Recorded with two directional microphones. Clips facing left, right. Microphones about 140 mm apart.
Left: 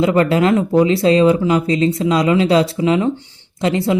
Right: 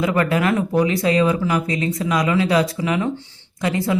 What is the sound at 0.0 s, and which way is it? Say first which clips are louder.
A man's voice: left 5 dB; 25° left (ahead or behind).